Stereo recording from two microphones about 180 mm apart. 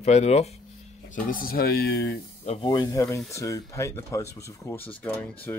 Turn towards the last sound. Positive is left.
turn(degrees=10)  # may be behind; listen again after turning